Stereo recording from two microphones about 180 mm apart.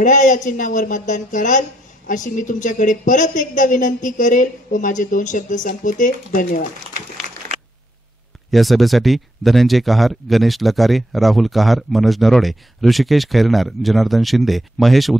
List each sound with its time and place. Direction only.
0.0 s a woman's voice: 45° left (ahead or behind)
8.5 s speech: centre (ahead or behind)